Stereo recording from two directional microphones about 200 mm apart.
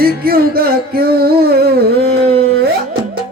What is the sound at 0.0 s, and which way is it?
Music, 50° right (ahead or behind).